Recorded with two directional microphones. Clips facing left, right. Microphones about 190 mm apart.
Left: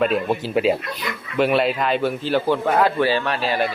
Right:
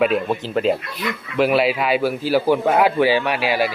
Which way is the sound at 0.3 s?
10° left (ahead or behind).